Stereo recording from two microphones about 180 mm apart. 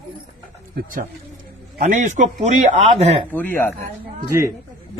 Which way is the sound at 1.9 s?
45° right (ahead or behind).